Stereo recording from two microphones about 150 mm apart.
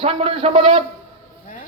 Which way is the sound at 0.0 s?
40° right (ahead or behind).